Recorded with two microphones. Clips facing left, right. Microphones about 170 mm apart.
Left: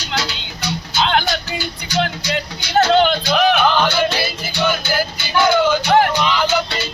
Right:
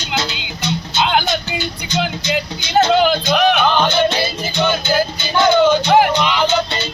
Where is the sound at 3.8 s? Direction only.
20° right (ahead or behind).